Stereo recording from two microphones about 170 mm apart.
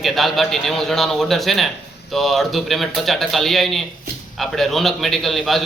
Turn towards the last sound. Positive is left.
turn(degrees=0)  # may be behind; listen again after turning